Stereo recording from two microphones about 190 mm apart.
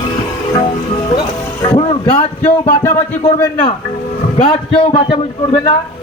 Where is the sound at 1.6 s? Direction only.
30° left (ahead or behind).